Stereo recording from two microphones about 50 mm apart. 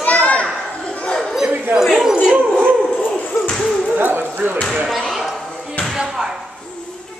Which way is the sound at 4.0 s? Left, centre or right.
Right.